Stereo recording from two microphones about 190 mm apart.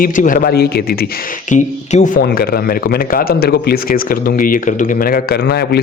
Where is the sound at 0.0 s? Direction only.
45° left (ahead or behind).